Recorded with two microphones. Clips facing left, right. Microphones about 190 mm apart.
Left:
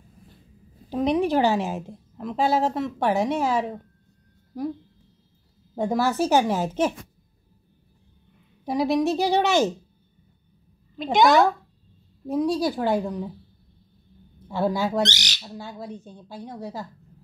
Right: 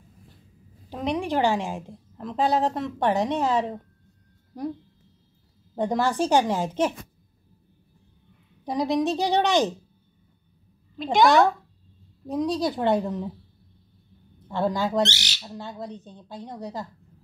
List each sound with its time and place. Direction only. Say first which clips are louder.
0.8 s a woman's voice: left 5 dB; 15° left (ahead or behind)
2.4 s a woman's voice: left 1 dB; 5° left (ahead or behind)
5.8 s a woman's voice: left 1 dB; 5° left (ahead or behind)
8.7 s a woman's voice: left 2 dB; 20° right (ahead or behind)
11.0 s a woman's voice: left 1 dB; centre (ahead or behind)
12.3 s speech: left 2 dB; 15° right (ahead or behind)
12.5 s a woman's voice: even; centre (ahead or behind)
14.8 s a woman's voice: right 3 dB; 10° left (ahead or behind)
15.0 s bird: left 1 dB; 10° right (ahead or behind)
15.5 s a woman's voice: right 1 dB; centre (ahead or behind)
16.5 s speech: even; 20° right (ahead or behind)